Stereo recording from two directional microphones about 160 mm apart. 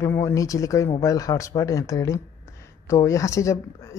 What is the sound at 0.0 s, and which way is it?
Speech, 20° left (ahead or behind).